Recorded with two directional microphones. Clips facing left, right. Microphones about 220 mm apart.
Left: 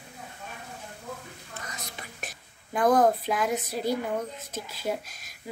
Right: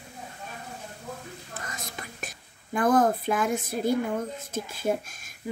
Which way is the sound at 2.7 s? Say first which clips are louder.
Even; 50° right (ahead or behind).